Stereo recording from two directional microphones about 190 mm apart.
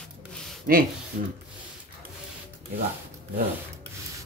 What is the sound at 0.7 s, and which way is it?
Speech, 50° right (ahead or behind).